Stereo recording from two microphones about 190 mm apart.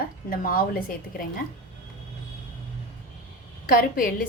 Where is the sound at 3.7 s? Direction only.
50° left (ahead or behind).